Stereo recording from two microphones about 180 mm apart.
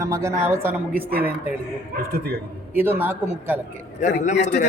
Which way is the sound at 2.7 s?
10° right (ahead or behind).